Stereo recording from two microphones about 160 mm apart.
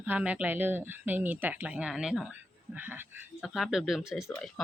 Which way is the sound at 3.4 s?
Centre (ahead or behind).